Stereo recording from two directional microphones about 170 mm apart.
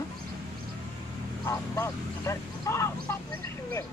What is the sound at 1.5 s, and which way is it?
Speech, 15° left (ahead or behind).